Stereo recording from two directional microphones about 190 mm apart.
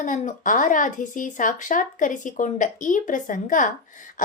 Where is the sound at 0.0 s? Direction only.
45° left (ahead or behind).